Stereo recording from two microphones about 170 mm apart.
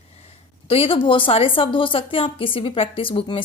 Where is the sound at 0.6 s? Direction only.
35° left (ahead or behind).